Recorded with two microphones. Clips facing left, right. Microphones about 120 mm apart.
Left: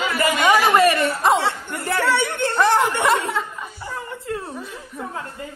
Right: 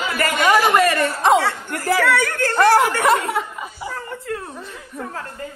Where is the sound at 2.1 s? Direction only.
25° left (ahead or behind).